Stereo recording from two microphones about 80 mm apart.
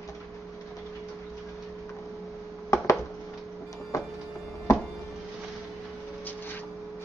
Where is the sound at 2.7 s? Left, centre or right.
Left.